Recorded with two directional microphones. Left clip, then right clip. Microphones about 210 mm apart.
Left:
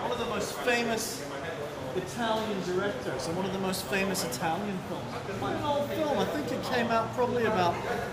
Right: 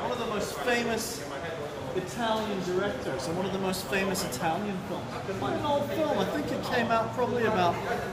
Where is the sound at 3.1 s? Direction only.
10° left (ahead or behind).